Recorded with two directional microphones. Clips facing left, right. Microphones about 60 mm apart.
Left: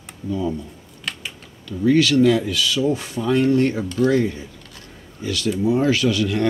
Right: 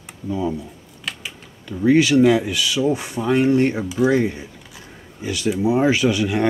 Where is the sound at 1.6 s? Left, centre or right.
Centre.